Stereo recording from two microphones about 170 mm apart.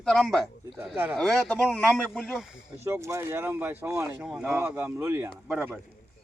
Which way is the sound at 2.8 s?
15° right (ahead or behind).